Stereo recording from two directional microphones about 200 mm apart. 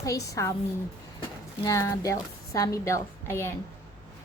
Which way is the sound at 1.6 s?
15° left (ahead or behind).